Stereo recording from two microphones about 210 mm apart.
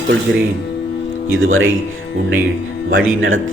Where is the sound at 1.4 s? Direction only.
70° right (ahead or behind).